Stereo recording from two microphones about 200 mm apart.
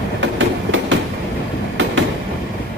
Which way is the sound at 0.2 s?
70° right (ahead or behind).